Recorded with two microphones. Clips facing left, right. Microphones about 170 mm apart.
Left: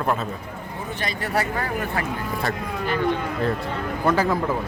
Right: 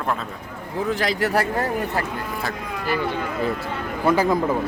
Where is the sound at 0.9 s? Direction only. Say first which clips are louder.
Right 7 dB; 90° right.